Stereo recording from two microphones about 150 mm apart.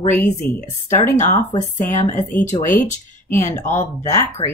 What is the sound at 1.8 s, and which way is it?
Speech, 55° left (ahead or behind).